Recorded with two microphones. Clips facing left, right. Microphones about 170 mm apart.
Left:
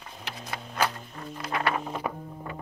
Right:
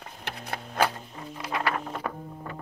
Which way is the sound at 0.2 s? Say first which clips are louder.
Right 2 dB; 60° right (ahead or behind).